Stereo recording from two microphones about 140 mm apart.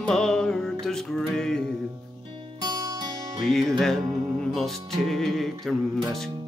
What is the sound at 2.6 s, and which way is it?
Music, 30° right (ahead or behind).